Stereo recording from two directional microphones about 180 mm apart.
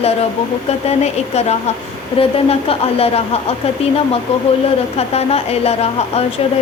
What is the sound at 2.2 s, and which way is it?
A woman's voice, 30° left (ahead or behind).